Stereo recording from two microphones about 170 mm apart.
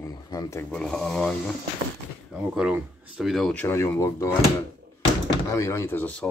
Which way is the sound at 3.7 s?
15° left (ahead or behind).